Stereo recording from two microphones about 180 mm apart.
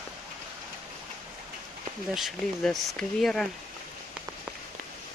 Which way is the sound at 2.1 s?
Centre (ahead or behind).